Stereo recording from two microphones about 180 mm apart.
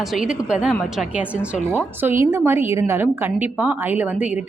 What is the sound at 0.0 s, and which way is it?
A woman's voice, centre (ahead or behind).